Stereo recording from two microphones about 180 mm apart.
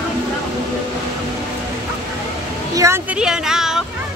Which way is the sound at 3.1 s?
5° right (ahead or behind).